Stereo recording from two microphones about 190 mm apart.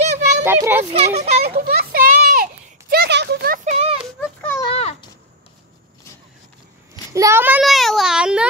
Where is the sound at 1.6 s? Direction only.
55° right (ahead or behind); by 4.0 s 35° right (ahead or behind).